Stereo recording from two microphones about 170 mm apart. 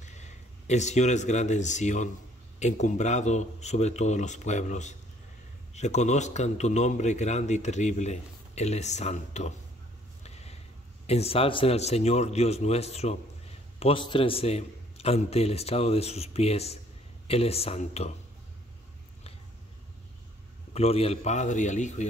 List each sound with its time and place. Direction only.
0.0 s a man's voice: 45° left (ahead or behind)
10.2 s a sound: 40° left (ahead or behind)
11.1 s a man's voice: 35° left (ahead or behind)
20.7 s a man's voice: 35° left (ahead or behind)